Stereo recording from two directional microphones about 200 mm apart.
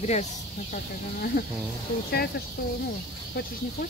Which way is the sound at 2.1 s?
50° left (ahead or behind).